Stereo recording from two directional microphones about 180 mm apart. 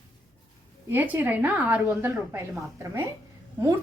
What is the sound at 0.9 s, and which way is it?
A woman's voice, 10° right (ahead or behind).